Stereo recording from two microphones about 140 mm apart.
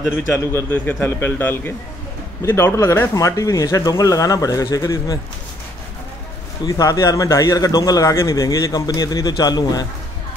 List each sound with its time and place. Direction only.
0.3 s a man's voice: 15° left (ahead or behind)
6.6 s a man's voice: 25° left (ahead or behind)